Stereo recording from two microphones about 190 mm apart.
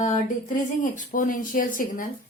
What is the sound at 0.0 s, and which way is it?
Speech, 40° left (ahead or behind).